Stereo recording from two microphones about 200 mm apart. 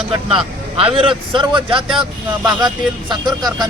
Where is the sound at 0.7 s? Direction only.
25° right (ahead or behind).